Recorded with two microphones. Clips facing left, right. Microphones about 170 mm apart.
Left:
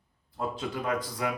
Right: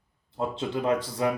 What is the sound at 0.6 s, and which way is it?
Speech, 30° right (ahead or behind).